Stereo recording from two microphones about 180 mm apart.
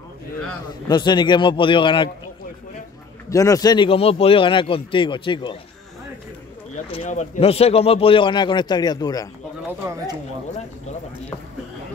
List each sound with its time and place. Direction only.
0.8 s speech: 25° left (ahead or behind)
3.3 s speech: 20° left (ahead or behind)
7.0 s speech: 40° left (ahead or behind); by 9.3 s 20° left (ahead or behind)
9.7 s speech: 15° right (ahead or behind)